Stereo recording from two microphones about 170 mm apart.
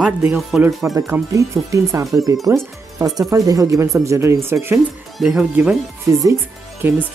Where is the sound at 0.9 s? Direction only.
15° right (ahead or behind).